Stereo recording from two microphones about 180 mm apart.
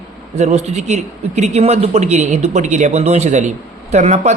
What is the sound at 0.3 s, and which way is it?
Speech, 40° right (ahead or behind).